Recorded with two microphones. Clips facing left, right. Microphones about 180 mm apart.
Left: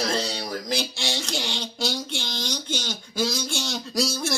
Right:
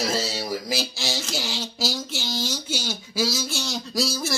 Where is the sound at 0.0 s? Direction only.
5° right (ahead or behind).